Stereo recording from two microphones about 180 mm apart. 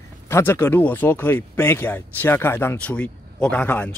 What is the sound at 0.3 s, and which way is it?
Speech, 15° left (ahead or behind).